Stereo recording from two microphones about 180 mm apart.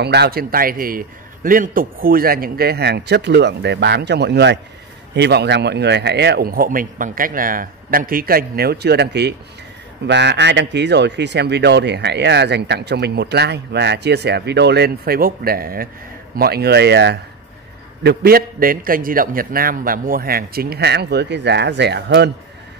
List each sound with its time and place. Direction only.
0.0 s a man's voice: 65° right (ahead or behind)
18.0 s a man's voice: 55° right (ahead or behind)